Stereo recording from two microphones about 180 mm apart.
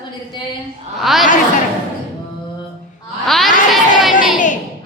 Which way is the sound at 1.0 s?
Centre (ahead or behind).